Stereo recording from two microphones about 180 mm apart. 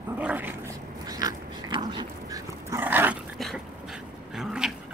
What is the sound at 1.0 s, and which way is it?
Dog, 20° right (ahead or behind).